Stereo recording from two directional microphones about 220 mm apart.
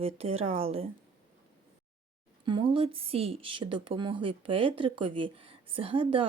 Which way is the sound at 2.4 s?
20° right (ahead or behind).